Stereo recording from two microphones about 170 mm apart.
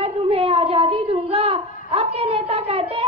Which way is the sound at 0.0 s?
35° right (ahead or behind).